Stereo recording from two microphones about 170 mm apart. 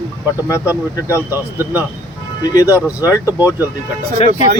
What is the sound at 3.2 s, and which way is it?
Speech, 10° right (ahead or behind).